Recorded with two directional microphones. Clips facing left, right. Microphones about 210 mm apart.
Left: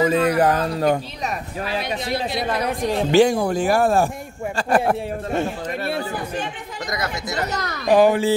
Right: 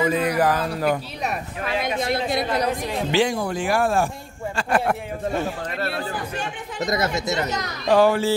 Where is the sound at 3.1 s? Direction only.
45° left (ahead or behind).